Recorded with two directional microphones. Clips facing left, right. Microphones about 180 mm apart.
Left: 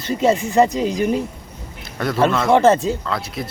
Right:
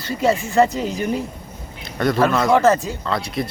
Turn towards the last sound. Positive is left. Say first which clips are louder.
# right 2 dB
turn(degrees=0)  # may be behind; listen again after turning